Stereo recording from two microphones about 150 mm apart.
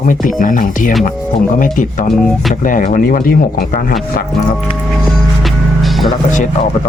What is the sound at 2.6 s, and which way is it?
Speech, 65° left (ahead or behind).